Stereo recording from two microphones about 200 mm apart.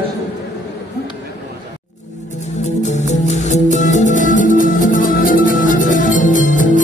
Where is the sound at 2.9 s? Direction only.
35° left (ahead or behind).